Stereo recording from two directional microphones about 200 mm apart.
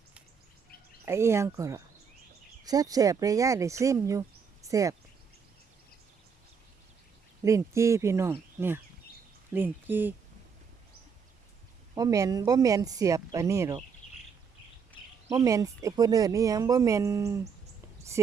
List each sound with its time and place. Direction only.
1.0 s speech: 15° right (ahead or behind)
7.4 s speech: 15° right (ahead or behind)
11.9 s speech: 15° right (ahead or behind)
15.3 s speech: 15° right (ahead or behind)